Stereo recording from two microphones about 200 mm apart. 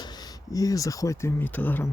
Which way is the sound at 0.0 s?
20° left (ahead or behind).